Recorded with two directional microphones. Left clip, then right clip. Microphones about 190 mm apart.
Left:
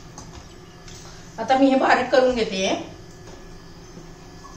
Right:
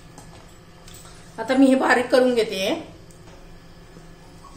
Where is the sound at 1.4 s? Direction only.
55° right (ahead or behind).